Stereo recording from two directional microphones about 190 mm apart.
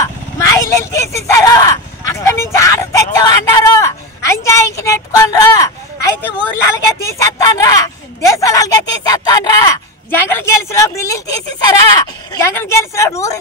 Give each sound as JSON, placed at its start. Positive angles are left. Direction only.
{"t": 0.0, "sound": "vehicle", "side_deg": 15}
{"t": 7.0, "sound": "speech", "side_deg": 15}